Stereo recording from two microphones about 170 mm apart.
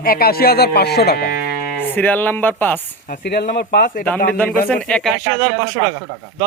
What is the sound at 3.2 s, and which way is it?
Speech, 65° left (ahead or behind).